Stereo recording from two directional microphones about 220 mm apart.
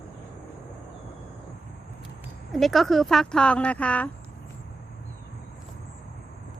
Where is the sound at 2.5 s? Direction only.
Centre (ahead or behind).